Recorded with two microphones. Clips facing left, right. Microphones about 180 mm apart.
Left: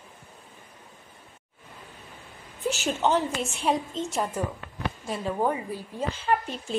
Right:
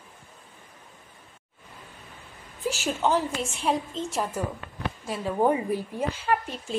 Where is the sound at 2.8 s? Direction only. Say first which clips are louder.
Even; 5° right (ahead or behind).